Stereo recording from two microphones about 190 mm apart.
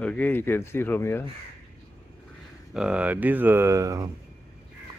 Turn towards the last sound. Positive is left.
turn(degrees=-15)  # may be behind; listen again after turning